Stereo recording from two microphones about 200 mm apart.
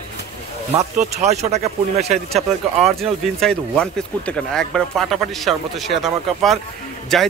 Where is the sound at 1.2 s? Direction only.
35° right (ahead or behind).